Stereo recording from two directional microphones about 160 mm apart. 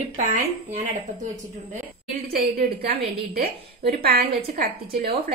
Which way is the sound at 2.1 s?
75° right (ahead or behind).